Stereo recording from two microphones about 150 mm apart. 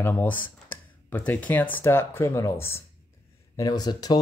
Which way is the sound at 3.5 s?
25° left (ahead or behind).